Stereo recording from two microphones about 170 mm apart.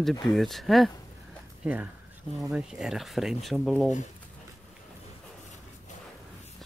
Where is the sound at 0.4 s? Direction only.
Centre (ahead or behind).